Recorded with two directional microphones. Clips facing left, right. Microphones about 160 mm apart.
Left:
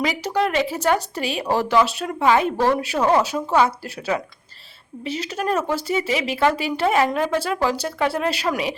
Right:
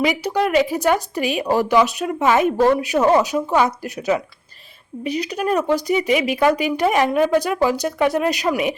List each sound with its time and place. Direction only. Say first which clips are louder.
0.3 s speech: right 2 dB; 5° right (ahead or behind)